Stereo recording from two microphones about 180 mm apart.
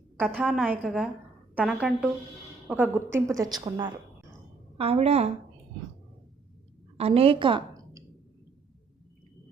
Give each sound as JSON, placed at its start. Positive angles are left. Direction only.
{"t": 0.2, "sound": "a woman's voice", "side_deg": 5}
{"t": 6.9, "sound": "a woman's voice", "side_deg": -35}